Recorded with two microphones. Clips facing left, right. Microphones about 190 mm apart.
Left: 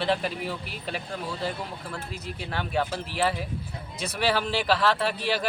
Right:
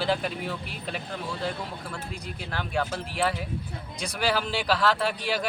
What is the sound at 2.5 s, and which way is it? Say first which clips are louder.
Speech: left 1 dB; centre (ahead or behind).